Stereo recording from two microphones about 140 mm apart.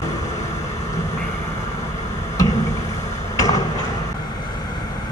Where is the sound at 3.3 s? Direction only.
25° left (ahead or behind).